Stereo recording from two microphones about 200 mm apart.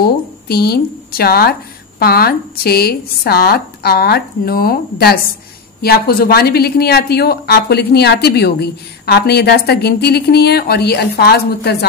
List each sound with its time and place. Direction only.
0.0 s speech: 50° left (ahead or behind)